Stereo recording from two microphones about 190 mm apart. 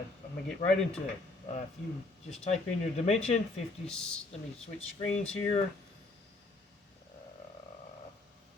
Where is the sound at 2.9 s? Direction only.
35° left (ahead or behind).